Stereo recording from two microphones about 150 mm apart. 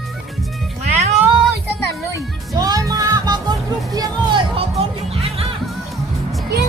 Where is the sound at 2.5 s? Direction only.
25° right (ahead or behind).